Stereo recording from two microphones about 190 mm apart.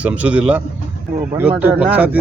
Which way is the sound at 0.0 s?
5° right (ahead or behind).